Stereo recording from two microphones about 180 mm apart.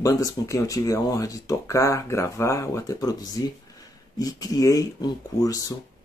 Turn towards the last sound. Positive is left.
turn(degrees=20)  # may be behind; listen again after turning